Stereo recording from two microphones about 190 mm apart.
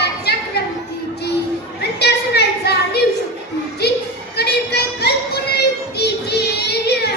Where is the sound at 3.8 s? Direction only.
60° left (ahead or behind).